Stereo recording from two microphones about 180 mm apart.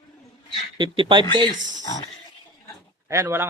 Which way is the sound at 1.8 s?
20° left (ahead or behind).